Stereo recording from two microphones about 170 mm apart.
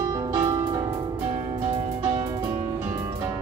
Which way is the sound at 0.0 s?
15° right (ahead or behind).